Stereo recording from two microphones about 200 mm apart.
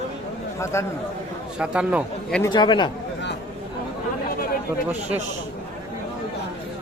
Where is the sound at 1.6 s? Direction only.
5° right (ahead or behind).